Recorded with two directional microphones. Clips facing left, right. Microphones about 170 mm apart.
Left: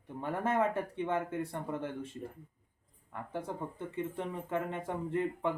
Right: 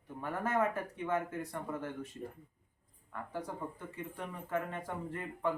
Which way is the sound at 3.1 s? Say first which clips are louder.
Left 2 dB; 25° left (ahead or behind).